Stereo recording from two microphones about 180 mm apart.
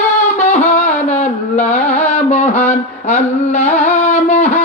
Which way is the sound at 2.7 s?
40° left (ahead or behind).